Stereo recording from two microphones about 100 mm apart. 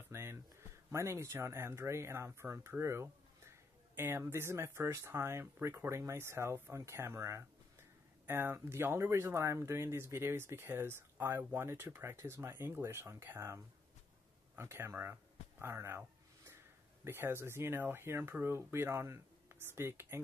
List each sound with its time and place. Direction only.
0.1 s a sound: 25° right (ahead or behind)
0.9 s speech: 30° right (ahead or behind)
17.0 s speech: 25° right (ahead or behind)